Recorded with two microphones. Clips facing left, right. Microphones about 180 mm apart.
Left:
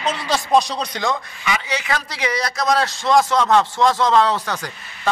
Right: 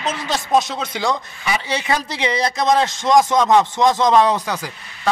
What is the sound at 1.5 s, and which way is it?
A man's voice, 30° right (ahead or behind).